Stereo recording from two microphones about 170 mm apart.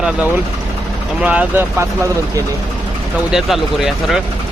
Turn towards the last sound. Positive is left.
turn(degrees=0)  # may be behind; listen again after turning